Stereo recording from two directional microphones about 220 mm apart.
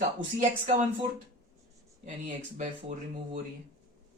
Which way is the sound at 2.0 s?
35° right (ahead or behind).